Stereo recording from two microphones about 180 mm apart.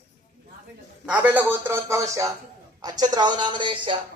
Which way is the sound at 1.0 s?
10° right (ahead or behind).